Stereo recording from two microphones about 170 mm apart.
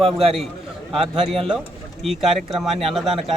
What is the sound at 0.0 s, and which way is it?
Speech, 35° right (ahead or behind).